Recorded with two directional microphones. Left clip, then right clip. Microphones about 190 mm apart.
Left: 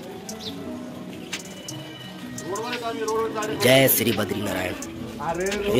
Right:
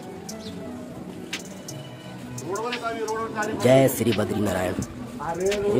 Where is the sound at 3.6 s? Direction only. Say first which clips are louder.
Left 1 dB; 15° right (ahead or behind).